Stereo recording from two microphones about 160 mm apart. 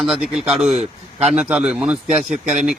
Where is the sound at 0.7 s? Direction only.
45° right (ahead or behind).